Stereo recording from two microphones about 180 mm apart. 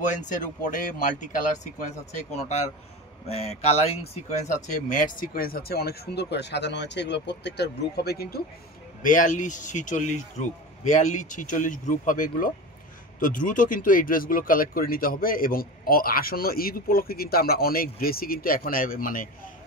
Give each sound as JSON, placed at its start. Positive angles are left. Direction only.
{"t": 0.1, "sound": "speech", "side_deg": 45}
{"t": 9.0, "sound": "speech", "side_deg": 45}